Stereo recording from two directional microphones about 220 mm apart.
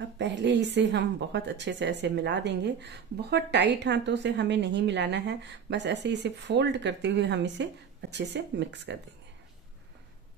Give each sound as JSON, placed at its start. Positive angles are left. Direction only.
{"t": 0.2, "sound": "a woman's voice", "side_deg": -50}